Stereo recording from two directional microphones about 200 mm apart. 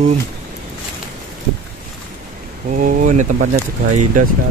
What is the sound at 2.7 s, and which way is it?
Speech, 40° right (ahead or behind).